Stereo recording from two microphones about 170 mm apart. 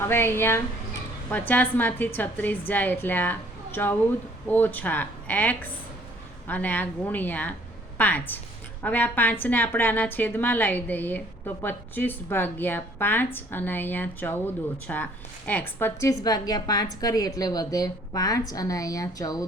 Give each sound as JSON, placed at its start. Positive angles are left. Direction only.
{"t": 0.1, "sound": "a woman's voice", "side_deg": 15}